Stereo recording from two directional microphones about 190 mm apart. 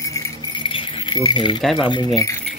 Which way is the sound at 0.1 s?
25° left (ahead or behind).